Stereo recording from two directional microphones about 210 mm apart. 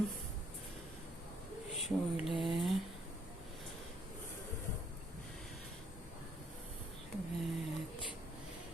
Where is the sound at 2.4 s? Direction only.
Centre (ahead or behind).